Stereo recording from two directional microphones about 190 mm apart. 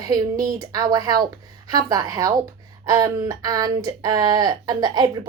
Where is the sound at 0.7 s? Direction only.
20° right (ahead or behind).